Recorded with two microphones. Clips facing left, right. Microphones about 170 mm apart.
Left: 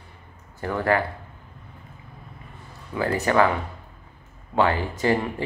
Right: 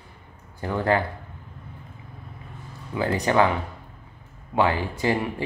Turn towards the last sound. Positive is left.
turn(degrees=-15)  # may be behind; listen again after turning